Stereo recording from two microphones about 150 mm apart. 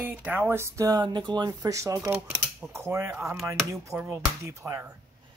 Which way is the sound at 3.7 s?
20° right (ahead or behind).